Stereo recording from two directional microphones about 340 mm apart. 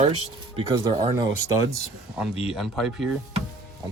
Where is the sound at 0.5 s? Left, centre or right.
Centre.